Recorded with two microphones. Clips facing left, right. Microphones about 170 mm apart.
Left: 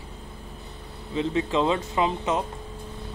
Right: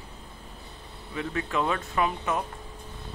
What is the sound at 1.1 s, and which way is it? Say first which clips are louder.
Speech: left 5 dB; 20° left (ahead or behind).